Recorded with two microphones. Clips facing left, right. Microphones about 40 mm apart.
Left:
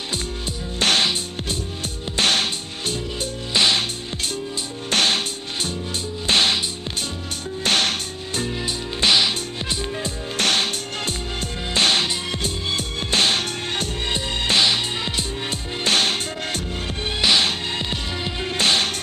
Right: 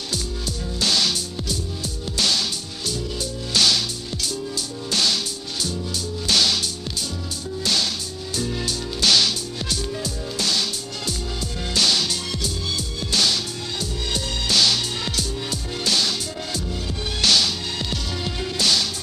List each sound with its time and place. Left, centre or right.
0.7 s music: left
2.1 s music: left
8.6 s music: left
10.3 s music: left
14.1 s music: left
15.8 s music: left